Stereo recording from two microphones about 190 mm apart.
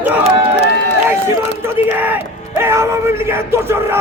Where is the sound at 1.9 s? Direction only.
10° right (ahead or behind).